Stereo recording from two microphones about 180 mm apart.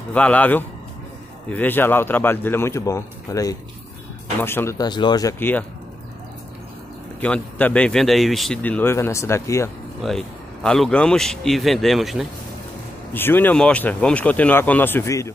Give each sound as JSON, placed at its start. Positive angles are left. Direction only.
{"t": 0.1, "sound": "speech", "side_deg": 5}
{"t": 7.2, "sound": "speech", "side_deg": 5}
{"t": 10.0, "sound": "a man's voice", "side_deg": 5}
{"t": 13.1, "sound": "speech", "side_deg": 10}